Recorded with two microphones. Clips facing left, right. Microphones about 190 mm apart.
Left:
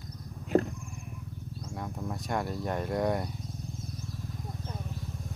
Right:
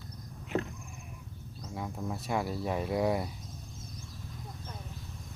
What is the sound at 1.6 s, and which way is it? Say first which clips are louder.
Speech: right 1 dB; 5° right (ahead or behind).